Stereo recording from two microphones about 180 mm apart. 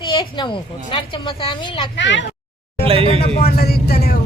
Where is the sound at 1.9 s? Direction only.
90° left.